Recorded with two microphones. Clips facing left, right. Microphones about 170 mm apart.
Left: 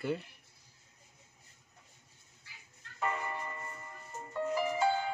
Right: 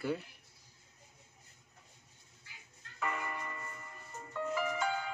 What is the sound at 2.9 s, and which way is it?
Music, 30° left (ahead or behind).